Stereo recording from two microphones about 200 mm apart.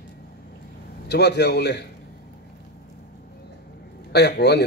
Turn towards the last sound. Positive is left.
turn(degrees=55)  # may be behind; listen again after turning